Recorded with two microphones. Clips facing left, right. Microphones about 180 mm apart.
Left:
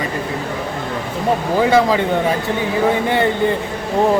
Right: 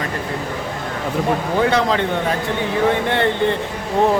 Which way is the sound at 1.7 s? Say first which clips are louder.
Left 4 dB; 5° left (ahead or behind).